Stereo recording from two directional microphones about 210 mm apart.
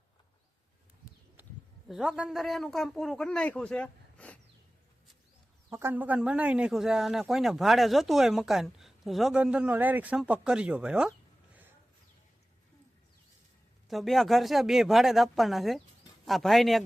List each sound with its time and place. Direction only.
1.4 s a sound: 10° right (ahead or behind)
1.9 s a man's voice: 5° right (ahead or behind)
5.7 s a man's voice: 10° right (ahead or behind)
13.8 s a man's voice: centre (ahead or behind)